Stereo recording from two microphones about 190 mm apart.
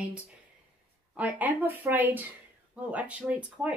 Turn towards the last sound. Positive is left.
turn(degrees=-5)  # may be behind; listen again after turning